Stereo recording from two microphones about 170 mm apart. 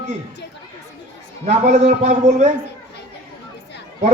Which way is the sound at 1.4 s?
45° right (ahead or behind).